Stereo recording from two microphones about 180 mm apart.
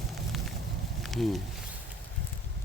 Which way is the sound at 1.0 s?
Centre (ahead or behind).